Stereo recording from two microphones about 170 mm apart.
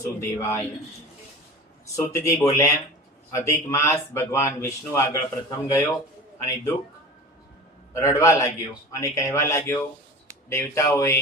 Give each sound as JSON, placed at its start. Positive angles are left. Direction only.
{"t": 0.0, "sound": "speech", "side_deg": 15}
{"t": 2.0, "sound": "speech", "side_deg": 20}
{"t": 7.9, "sound": "speech", "side_deg": 15}